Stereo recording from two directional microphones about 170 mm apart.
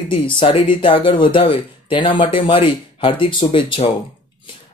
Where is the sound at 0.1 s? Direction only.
30° left (ahead or behind).